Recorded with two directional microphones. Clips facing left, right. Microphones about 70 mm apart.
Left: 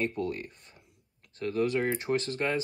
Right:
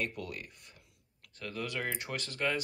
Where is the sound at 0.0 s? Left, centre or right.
Left.